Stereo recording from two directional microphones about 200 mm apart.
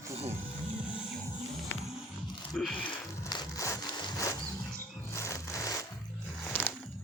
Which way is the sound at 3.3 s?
20° left (ahead or behind).